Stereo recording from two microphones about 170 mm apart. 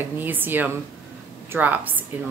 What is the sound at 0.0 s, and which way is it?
A woman's voice, 10° right (ahead or behind).